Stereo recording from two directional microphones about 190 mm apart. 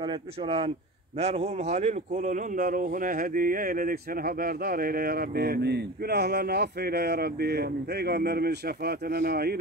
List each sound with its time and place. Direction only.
0.0 s speech: 30° right (ahead or behind); by 9.6 s 55° right (ahead or behind)